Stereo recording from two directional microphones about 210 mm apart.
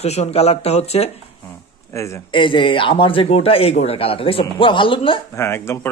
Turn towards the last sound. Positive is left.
turn(degrees=10)  # may be behind; listen again after turning